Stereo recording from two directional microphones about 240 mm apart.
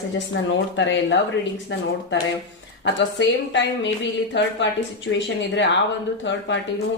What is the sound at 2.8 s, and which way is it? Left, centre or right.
Speech, left.